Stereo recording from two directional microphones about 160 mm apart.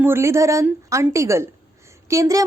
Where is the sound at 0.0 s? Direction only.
15° right (ahead or behind).